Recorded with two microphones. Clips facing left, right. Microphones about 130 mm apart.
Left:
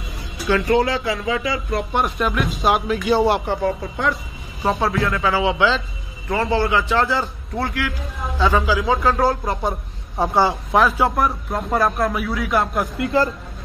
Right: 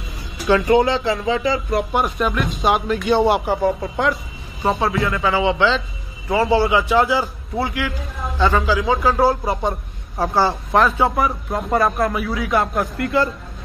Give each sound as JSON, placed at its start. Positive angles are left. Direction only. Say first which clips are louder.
{"t": 0.7, "sound": "speech", "louder": "right 2 dB", "side_deg": -20}
{"t": 1.7, "sound": "speech", "louder": "right 2 dB", "side_deg": -5}
{"t": 6.2, "sound": "a man's voice", "louder": "right 3 dB", "side_deg": -10}
{"t": 9.7, "sound": "a sound", "louder": "right 1 dB", "side_deg": 0}
{"t": 10.3, "sound": "speech", "louder": "even", "side_deg": 20}
{"t": 10.7, "sound": "speech", "louder": "right 1 dB", "side_deg": 5}